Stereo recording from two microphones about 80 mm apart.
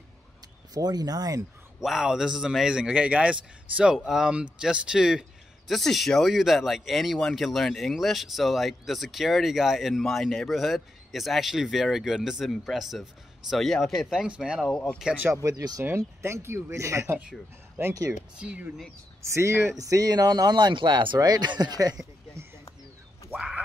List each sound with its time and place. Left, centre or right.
0.7 s speech: right
1.8 s a man's voice: centre
5.7 s speech: centre
14.2 s a man's voice: centre
15.3 s speech: right
16.2 s speech: right
17.2 s a man's voice: centre
19.2 s speech: right
19.8 s speech: right
21.2 s speech: right
23.3 s a sound: centre